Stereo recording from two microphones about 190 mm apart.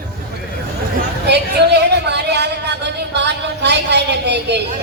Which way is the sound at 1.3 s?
60° right (ahead or behind).